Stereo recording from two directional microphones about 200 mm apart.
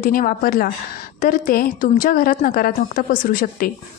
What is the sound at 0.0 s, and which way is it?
A woman's voice, 45° left (ahead or behind).